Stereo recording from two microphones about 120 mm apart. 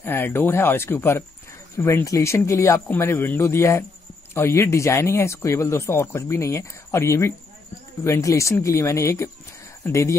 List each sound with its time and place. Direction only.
0.0 s speech: 20° left (ahead or behind)